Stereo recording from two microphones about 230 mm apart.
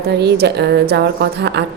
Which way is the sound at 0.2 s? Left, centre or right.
Right.